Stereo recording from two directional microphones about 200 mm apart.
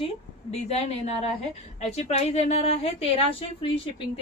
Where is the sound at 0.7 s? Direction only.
30° left (ahead or behind).